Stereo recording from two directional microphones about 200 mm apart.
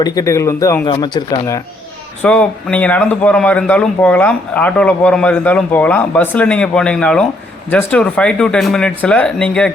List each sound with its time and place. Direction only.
0.0 s speech: 20° left (ahead or behind)
2.2 s speech: 5° left (ahead or behind)